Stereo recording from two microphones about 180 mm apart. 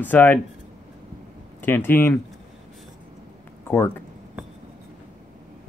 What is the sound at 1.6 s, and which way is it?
Speech, 10° left (ahead or behind).